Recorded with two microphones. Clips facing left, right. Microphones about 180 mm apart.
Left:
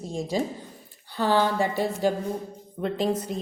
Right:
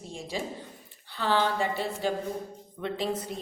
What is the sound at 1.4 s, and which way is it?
A woman's voice, 45° left (ahead or behind).